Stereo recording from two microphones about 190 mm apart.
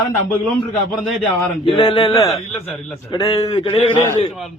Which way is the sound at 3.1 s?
20° left (ahead or behind).